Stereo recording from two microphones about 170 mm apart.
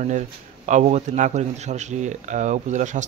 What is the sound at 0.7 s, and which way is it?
A man's voice, 45° right (ahead or behind).